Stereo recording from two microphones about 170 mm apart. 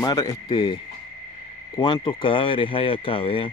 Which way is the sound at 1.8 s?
25° left (ahead or behind).